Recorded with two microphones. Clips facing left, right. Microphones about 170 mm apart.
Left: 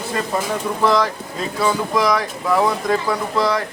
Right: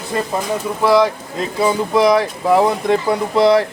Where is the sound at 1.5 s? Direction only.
25° right (ahead or behind).